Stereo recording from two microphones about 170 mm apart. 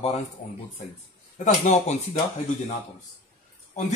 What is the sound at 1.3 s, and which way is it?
Speech, 40° left (ahead or behind).